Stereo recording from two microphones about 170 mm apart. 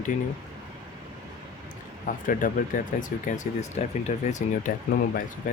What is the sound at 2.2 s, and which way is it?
Speech, 50° left (ahead or behind).